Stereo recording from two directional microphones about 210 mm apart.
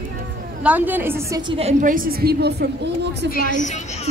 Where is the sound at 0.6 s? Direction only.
10° right (ahead or behind).